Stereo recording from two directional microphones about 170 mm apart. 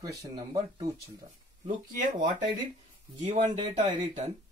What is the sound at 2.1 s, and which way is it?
Speech, 25° right (ahead or behind).